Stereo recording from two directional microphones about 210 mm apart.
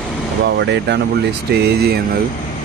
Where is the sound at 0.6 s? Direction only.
55° right (ahead or behind).